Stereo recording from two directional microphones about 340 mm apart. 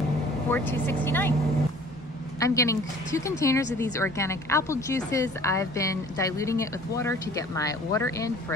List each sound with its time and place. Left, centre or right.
0.5 s a woman's voice: centre
2.4 s a woman's voice: centre